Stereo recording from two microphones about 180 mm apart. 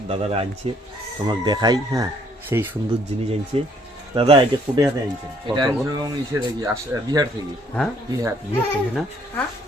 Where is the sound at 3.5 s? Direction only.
35° right (ahead or behind).